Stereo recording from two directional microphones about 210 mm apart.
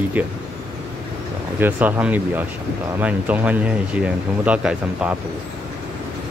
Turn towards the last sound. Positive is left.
turn(degrees=-5)  # may be behind; listen again after turning